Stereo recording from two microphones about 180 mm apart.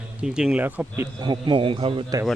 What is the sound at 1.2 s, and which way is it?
Speech, 25° right (ahead or behind).